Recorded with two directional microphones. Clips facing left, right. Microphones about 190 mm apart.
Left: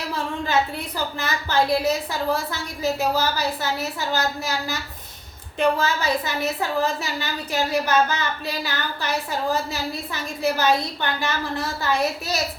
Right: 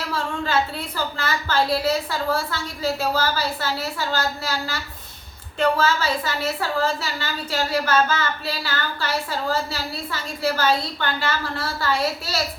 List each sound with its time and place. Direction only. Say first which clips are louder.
0.1 s a woman's voice: even; 15° left (ahead or behind)